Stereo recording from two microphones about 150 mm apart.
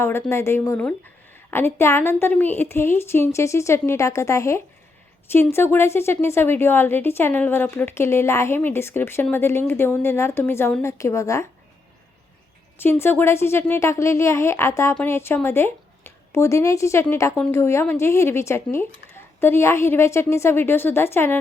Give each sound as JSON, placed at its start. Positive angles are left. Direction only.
{"t": 0.0, "sound": "a woman's voice", "side_deg": 15}
{"t": 12.8, "sound": "a woman's voice", "side_deg": 15}